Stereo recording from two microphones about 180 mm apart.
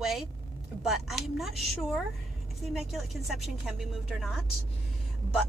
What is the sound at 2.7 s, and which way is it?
A woman's voice, centre (ahead or behind).